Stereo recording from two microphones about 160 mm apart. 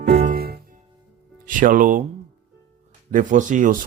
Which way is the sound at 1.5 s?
55° right (ahead or behind).